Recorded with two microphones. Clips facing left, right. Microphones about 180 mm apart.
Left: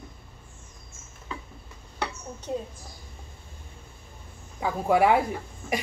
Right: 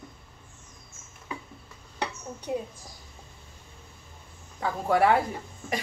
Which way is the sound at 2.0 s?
10° right (ahead or behind).